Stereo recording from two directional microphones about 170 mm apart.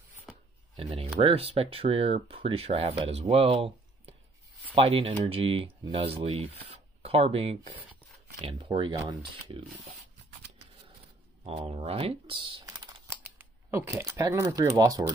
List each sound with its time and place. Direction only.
0.7 s speech: 35° right (ahead or behind)
11.4 s speech: 35° right (ahead or behind)